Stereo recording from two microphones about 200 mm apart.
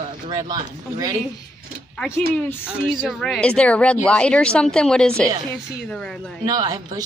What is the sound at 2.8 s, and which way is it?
Speech, 5° right (ahead or behind).